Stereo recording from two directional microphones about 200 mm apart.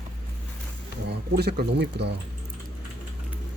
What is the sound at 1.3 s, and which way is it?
Speech, 55° right (ahead or behind).